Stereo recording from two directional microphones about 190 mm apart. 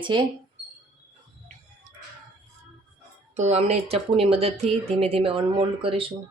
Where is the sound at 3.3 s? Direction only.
35° right (ahead or behind).